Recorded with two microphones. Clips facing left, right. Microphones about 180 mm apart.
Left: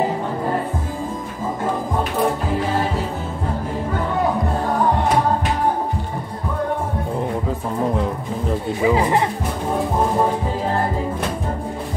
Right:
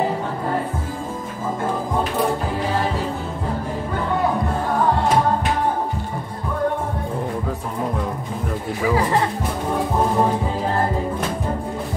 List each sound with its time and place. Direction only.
8.5 s music: 20° left (ahead or behind)